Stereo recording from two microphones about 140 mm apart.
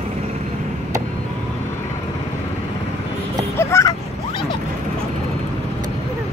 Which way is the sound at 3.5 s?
20° left (ahead or behind).